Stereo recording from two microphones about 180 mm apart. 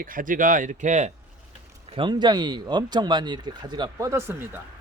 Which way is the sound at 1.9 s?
25° right (ahead or behind).